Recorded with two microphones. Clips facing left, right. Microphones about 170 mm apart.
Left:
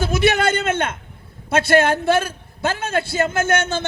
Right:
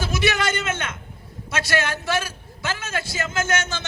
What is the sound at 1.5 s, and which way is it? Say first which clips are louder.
A man's voice: left 9 dB; 55° left (ahead or behind).